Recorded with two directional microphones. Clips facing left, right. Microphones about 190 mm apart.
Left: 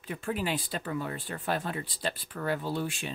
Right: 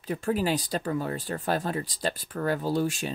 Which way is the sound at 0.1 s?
40° right (ahead or behind).